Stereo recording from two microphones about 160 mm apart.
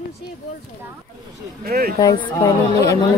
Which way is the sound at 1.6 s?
70° right (ahead or behind).